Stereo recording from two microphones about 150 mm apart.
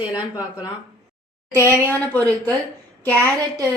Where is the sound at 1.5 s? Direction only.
15° left (ahead or behind).